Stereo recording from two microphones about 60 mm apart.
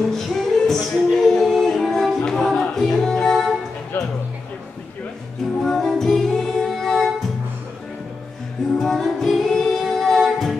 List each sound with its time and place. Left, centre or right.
0.1 s a capella: centre
3.9 s music: left
5.6 s music: centre
8.7 s music: centre